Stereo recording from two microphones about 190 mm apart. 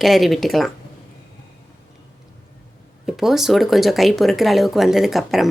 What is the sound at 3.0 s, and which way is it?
Speech, centre (ahead or behind).